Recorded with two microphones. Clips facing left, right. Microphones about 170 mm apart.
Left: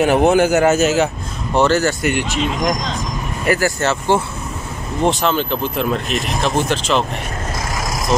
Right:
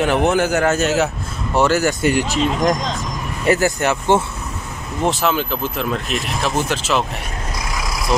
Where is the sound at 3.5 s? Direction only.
15° right (ahead or behind).